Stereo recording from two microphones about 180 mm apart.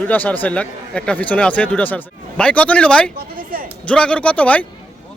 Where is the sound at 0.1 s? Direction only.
10° left (ahead or behind).